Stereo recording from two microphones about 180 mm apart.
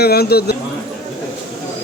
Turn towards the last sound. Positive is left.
turn(degrees=60)  # may be behind; listen again after turning